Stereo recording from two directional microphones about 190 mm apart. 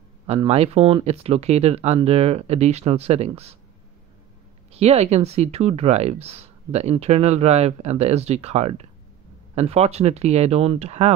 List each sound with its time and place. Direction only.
0.3 s speech: 30° right (ahead or behind)
4.7 s speech: 35° right (ahead or behind)